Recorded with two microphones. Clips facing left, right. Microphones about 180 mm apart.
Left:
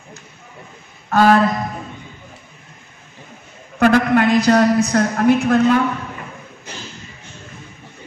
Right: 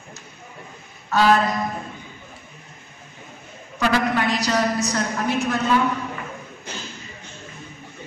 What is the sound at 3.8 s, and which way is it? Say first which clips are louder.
A man's voice: left 7 dB; 55° left (ahead or behind).